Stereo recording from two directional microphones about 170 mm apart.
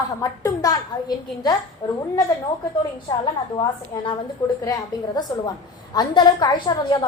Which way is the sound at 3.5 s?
25° left (ahead or behind).